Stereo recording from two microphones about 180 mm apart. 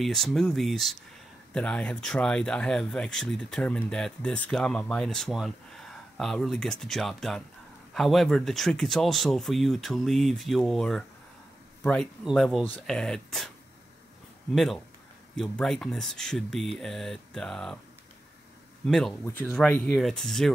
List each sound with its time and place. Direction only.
0.0 s speech: centre (ahead or behind)
14.5 s speech: centre (ahead or behind)
18.9 s speech: 5° left (ahead or behind)